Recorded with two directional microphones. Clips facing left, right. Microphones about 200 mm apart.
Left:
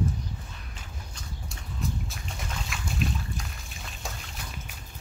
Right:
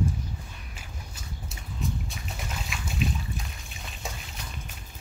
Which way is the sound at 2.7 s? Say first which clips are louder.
Right 1 dB; centre (ahead or behind).